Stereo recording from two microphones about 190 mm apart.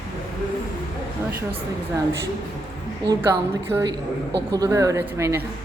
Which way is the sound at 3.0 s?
20° right (ahead or behind).